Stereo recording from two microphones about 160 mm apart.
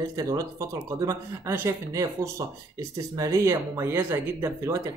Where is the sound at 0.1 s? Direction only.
20° right (ahead or behind).